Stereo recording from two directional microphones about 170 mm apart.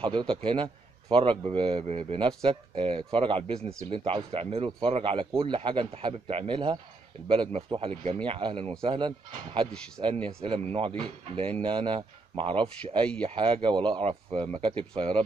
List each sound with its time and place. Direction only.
0.0 s a man's voice: 30° right (ahead or behind)